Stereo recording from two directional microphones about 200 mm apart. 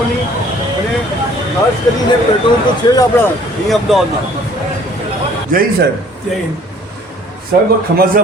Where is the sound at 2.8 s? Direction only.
20° left (ahead or behind).